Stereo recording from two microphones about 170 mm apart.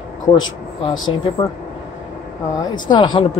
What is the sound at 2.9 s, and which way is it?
Speech, 25° left (ahead or behind).